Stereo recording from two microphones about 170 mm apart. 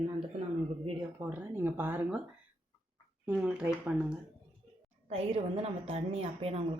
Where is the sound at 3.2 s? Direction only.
10° right (ahead or behind).